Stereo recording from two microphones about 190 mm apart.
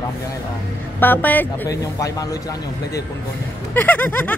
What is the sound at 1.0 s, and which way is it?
A woman's voice, 10° left (ahead or behind).